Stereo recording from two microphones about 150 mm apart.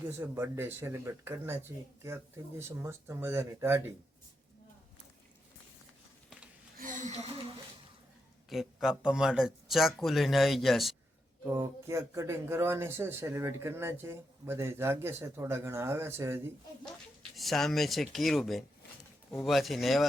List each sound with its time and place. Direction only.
0.1 s speech: 15° right (ahead or behind)
6.7 s a sound: 60° right (ahead or behind)
8.4 s speech: centre (ahead or behind)
11.6 s speech: 20° right (ahead or behind)
17.3 s speech: centre (ahead or behind)